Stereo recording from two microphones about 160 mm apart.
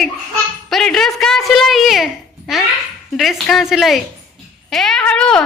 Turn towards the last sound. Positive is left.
turn(degrees=5)  # may be behind; listen again after turning